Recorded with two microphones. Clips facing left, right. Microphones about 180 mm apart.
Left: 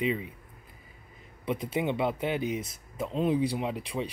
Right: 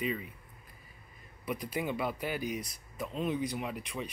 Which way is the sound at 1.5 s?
25° left (ahead or behind).